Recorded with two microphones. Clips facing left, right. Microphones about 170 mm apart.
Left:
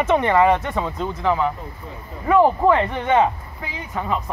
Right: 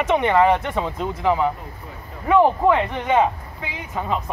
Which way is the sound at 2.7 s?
5° right (ahead or behind).